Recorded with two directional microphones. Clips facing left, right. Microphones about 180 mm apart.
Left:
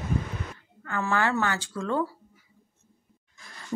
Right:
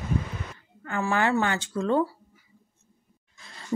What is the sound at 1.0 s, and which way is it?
Speech, 15° right (ahead or behind).